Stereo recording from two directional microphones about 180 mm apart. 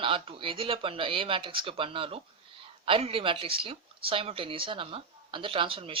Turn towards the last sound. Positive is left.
turn(degrees=-30)  # may be behind; listen again after turning